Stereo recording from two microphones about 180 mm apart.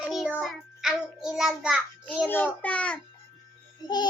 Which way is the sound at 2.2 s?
10° left (ahead or behind).